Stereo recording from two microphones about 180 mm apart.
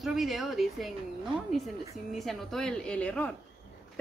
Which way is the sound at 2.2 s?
Centre (ahead or behind).